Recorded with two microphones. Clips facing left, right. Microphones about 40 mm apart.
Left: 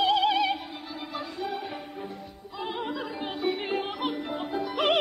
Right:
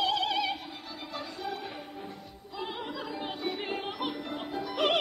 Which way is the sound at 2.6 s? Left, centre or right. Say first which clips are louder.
Left 5 dB; centre.